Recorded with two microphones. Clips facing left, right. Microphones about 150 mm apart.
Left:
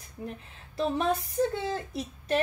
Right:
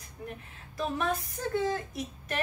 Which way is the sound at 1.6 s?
30° left (ahead or behind).